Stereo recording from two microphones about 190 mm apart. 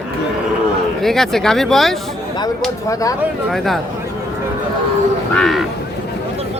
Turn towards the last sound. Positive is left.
turn(degrees=0)  # may be behind; listen again after turning